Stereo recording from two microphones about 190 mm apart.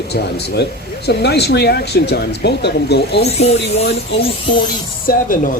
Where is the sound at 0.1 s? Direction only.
60° left (ahead or behind).